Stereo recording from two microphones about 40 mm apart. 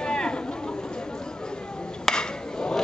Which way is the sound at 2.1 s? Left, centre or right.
Centre.